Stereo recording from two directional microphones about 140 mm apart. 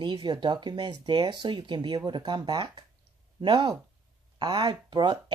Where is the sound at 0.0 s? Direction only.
35° right (ahead or behind).